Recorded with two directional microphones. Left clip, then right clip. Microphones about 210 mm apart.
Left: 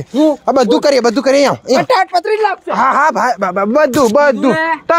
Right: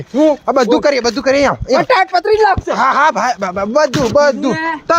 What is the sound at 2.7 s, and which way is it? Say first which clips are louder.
Speech: even; 45° left (ahead or behind).